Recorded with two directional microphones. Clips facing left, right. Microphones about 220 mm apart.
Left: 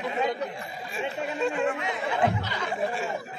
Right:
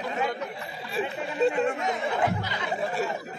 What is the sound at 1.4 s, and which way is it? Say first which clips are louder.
Speech: right 5 dB; 35° right (ahead or behind).